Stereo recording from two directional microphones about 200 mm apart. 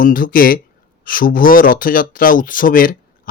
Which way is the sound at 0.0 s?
45° left (ahead or behind).